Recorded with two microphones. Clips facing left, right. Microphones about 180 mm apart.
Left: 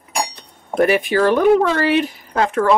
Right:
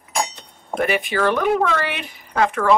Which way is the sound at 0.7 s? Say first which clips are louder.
Left 5 dB; 40° left (ahead or behind).